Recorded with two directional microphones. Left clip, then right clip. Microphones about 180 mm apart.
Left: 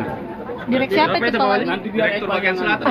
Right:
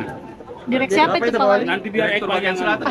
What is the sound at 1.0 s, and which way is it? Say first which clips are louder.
Speech: even; 65° right (ahead or behind).